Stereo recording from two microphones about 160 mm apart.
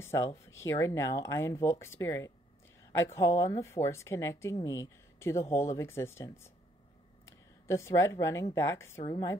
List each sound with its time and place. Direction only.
0.0 s speech: 15° left (ahead or behind)